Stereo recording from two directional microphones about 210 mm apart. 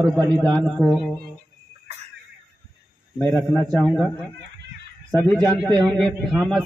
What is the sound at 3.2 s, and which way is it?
Speech, 5° left (ahead or behind).